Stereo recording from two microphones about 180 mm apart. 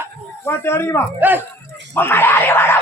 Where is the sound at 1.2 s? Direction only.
10° right (ahead or behind).